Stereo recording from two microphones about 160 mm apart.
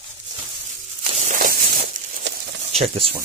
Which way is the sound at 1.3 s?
60° right (ahead or behind).